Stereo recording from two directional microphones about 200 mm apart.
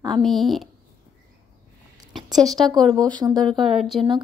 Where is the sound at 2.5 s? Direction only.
Centre (ahead or behind).